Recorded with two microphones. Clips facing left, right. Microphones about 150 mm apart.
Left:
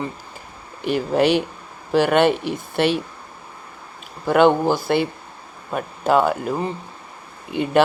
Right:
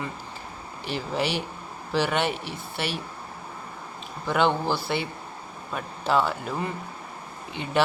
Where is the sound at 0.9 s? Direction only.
55° left (ahead or behind).